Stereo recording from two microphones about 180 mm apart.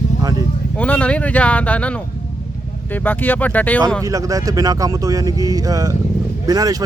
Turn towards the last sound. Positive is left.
turn(degrees=-20)  # may be behind; listen again after turning